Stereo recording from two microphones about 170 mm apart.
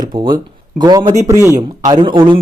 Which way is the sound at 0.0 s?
25° right (ahead or behind).